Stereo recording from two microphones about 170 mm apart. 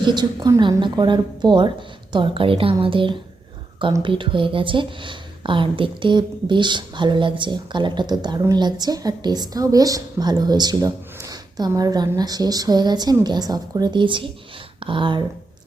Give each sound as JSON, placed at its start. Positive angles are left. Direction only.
{"t": 0.1, "sound": "a woman's voice", "side_deg": -25}